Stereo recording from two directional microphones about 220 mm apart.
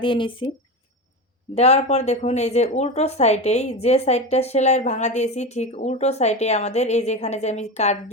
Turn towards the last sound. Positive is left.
turn(degrees=30)  # may be behind; listen again after turning